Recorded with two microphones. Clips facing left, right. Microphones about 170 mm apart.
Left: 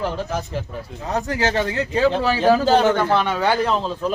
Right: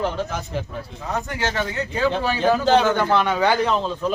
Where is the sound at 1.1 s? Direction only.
35° left (ahead or behind).